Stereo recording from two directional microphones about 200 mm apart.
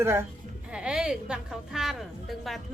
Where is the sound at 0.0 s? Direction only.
10° right (ahead or behind).